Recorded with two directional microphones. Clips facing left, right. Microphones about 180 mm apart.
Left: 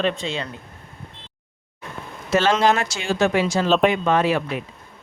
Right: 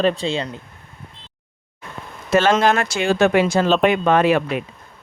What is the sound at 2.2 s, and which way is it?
Speech, 55° right (ahead or behind).